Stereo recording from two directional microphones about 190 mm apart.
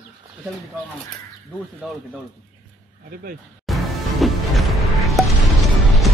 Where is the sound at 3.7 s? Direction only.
Centre (ahead or behind).